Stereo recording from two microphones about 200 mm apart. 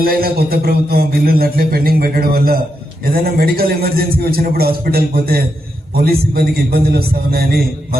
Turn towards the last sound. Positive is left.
turn(degrees=-50)  # may be behind; listen again after turning